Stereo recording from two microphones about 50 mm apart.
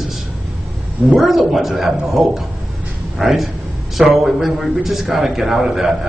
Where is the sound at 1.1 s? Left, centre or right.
Centre.